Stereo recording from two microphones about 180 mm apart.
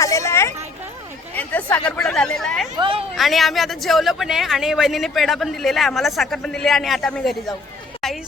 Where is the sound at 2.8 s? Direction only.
30° right (ahead or behind).